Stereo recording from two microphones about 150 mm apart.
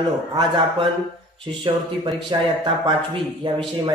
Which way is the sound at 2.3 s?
30° right (ahead or behind).